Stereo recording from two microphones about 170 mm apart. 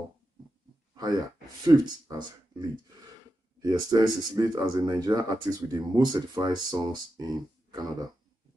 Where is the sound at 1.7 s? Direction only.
25° right (ahead or behind).